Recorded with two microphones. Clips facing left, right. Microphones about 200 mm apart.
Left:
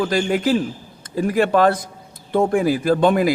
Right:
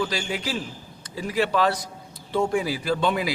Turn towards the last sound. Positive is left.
turn(degrees=50)  # may be behind; listen again after turning